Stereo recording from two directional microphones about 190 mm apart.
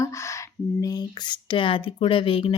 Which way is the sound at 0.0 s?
15° left (ahead or behind).